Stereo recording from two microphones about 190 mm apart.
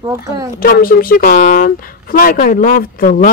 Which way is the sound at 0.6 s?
50° left (ahead or behind).